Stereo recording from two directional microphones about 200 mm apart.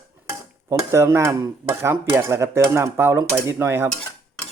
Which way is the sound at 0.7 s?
15° right (ahead or behind).